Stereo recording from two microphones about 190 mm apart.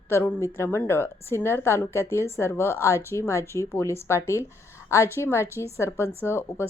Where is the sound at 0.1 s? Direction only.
15° left (ahead or behind).